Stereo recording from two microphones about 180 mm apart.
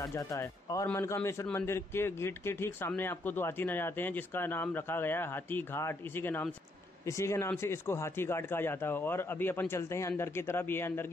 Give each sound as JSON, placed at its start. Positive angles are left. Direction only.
{"t": 0.0, "sound": "speech", "side_deg": 20}